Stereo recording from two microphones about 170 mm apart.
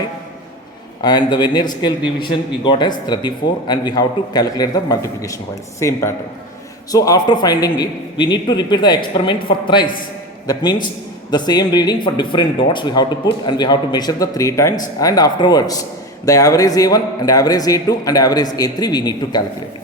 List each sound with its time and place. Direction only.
1.0 s a man's voice: 25° left (ahead or behind)